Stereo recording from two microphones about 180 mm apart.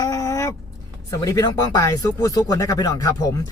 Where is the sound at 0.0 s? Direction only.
20° left (ahead or behind).